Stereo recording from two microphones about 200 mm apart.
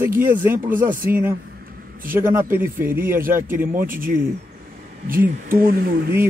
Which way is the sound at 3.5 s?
10° right (ahead or behind).